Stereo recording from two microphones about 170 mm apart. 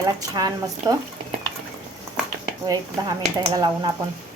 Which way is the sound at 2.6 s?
20° right (ahead or behind).